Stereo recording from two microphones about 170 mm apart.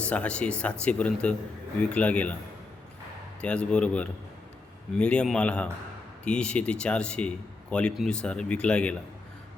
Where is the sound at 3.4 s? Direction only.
5° left (ahead or behind).